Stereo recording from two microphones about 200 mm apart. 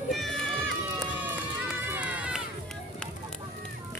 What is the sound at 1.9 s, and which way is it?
Run, 10° right (ahead or behind).